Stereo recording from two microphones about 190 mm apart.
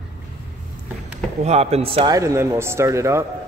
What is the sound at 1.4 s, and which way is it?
Speech, 35° right (ahead or behind).